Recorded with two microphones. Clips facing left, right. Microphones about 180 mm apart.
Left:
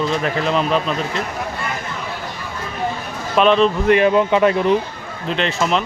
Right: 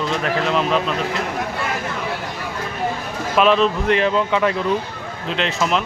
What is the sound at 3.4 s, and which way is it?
Speech, centre (ahead or behind).